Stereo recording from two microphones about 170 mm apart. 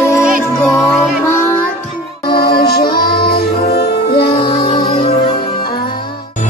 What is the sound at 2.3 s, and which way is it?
Music, 65° left (ahead or behind).